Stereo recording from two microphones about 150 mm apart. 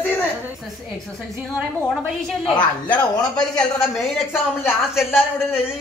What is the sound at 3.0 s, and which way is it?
Speech, 5° left (ahead or behind).